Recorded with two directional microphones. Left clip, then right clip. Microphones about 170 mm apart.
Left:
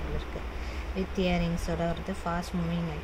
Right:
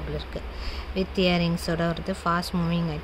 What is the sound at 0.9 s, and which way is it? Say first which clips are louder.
Speech: right 6 dB; 45° right (ahead or behind).